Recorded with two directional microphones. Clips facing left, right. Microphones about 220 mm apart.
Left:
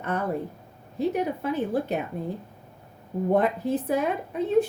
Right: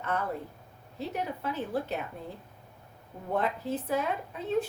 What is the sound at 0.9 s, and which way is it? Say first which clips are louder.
A woman's voice: left 9 dB; 15° left (ahead or behind).